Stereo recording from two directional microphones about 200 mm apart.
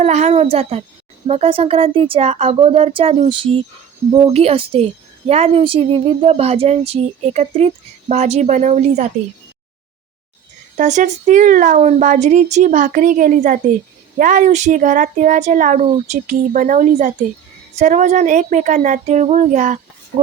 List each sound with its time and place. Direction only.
0.0 s a woman's voice: 35° right (ahead or behind)
10.8 s a woman's voice: 35° right (ahead or behind)